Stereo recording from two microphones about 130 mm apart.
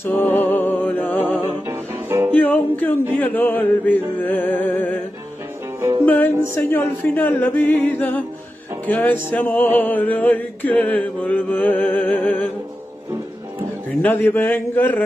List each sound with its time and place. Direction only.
0.0 s music: 15° left (ahead or behind)
1.7 s music: 15° right (ahead or behind)
2.3 s music: 10° left (ahead or behind)
6.0 s music: 15° left (ahead or behind)
14.0 s music: 15° left (ahead or behind)